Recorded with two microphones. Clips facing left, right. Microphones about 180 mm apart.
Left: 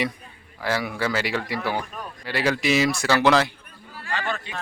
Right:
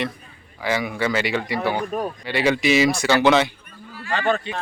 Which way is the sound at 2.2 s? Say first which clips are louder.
Right 2 dB; centre (ahead or behind).